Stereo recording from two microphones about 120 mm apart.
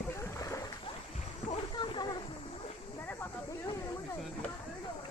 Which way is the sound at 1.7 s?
40° left (ahead or behind).